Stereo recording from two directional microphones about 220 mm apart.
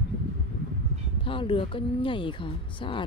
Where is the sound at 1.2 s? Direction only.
25° left (ahead or behind).